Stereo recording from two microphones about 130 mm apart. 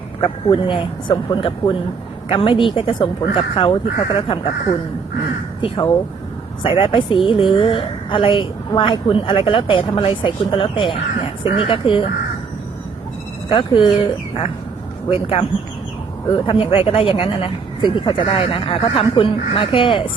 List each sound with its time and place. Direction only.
0.2 s a woman's voice: 40° left (ahead or behind)
5.6 s a woman's voice: 40° left (ahead or behind)
13.5 s a woman's voice: 40° left (ahead or behind)